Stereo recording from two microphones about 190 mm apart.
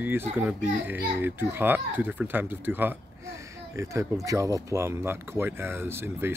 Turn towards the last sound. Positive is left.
turn(degrees=-10)  # may be behind; listen again after turning